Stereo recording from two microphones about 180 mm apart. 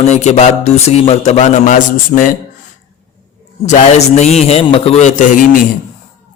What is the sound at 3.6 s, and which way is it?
A man's voice, 40° left (ahead or behind).